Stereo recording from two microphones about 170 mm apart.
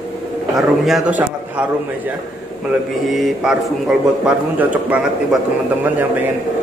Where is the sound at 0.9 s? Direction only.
5° right (ahead or behind).